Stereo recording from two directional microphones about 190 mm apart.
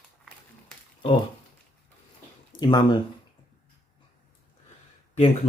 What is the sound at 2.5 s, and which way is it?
Speech, 20° left (ahead or behind).